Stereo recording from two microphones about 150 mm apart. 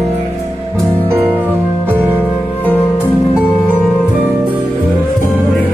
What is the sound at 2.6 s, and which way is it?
Music, 10° left (ahead or behind).